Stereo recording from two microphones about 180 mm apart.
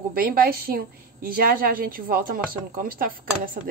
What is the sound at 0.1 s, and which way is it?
A woman's voice, 55° right (ahead or behind).